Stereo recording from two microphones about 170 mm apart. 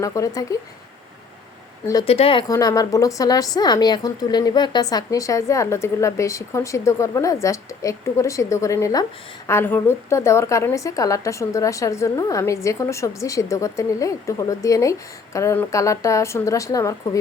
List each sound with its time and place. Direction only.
0.0 s a woman's voice: 20° left (ahead or behind)
2.0 s speech: 35° left (ahead or behind)
2.5 s a woman's voice: 20° left (ahead or behind)